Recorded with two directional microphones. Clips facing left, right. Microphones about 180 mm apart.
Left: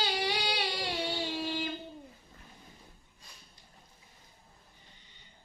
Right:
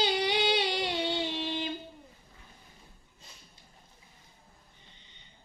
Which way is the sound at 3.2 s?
25° right (ahead or behind).